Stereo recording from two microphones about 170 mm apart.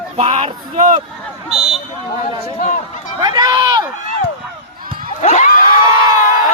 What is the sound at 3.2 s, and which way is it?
Speech, 20° right (ahead or behind).